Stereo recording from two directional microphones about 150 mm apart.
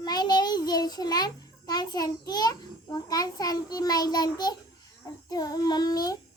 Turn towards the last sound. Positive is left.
turn(degrees=25)  # may be behind; listen again after turning